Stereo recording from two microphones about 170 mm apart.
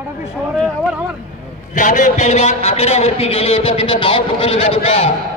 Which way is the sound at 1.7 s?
50° left (ahead or behind).